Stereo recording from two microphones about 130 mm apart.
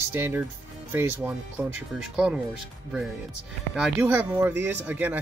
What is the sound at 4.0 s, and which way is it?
Speech, 15° right (ahead or behind).